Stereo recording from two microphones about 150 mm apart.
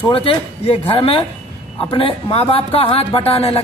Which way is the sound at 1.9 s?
40° left (ahead or behind).